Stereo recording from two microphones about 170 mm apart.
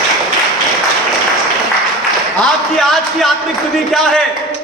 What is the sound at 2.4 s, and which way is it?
A man's voice, centre (ahead or behind).